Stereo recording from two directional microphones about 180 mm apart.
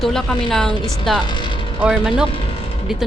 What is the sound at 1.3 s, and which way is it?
Speech, 25° left (ahead or behind).